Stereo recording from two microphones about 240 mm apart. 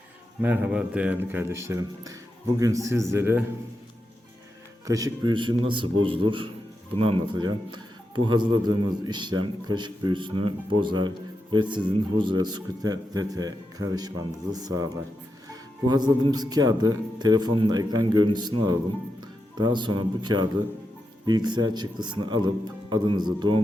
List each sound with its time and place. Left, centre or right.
0.4 s speech: centre
4.9 s speech: centre